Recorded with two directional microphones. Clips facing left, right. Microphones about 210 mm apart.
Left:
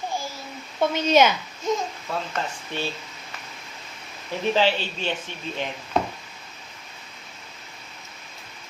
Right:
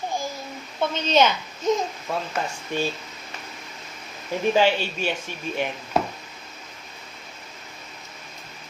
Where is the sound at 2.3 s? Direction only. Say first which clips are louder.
Right 3 dB; 15° right (ahead or behind).